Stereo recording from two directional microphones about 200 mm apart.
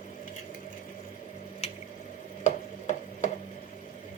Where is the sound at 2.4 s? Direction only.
40° left (ahead or behind).